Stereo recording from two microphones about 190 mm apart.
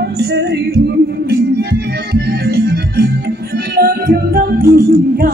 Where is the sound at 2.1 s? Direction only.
55° right (ahead or behind).